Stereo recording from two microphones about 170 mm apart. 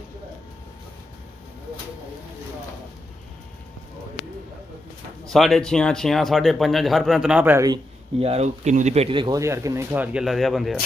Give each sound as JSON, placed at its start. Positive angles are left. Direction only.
{"t": 5.2, "sound": "speech", "side_deg": 0}
{"t": 8.2, "sound": "speech", "side_deg": -40}
{"t": 9.4, "sound": "speech", "side_deg": -20}